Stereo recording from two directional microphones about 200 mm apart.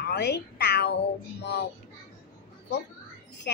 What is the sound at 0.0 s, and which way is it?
Cat, 55° left (ahead or behind).